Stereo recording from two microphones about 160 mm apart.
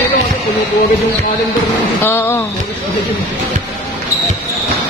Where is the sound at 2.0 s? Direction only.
15° left (ahead or behind).